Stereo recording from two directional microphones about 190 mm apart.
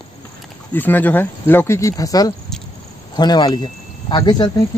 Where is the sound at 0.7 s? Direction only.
10° left (ahead or behind).